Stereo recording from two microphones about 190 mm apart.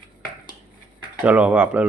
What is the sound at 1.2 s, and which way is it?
Speech, 5° right (ahead or behind).